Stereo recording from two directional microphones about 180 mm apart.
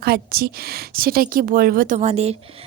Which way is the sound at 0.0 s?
60° right (ahead or behind).